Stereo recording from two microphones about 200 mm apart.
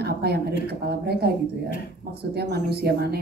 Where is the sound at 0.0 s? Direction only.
55° right (ahead or behind).